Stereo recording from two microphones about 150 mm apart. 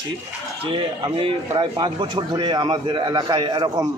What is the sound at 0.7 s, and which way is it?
A man's voice, 35° right (ahead or behind).